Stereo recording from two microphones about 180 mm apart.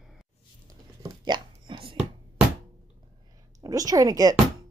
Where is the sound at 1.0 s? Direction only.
25° right (ahead or behind).